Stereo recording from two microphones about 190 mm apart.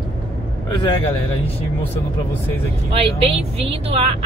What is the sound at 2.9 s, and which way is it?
Speech, 30° right (ahead or behind).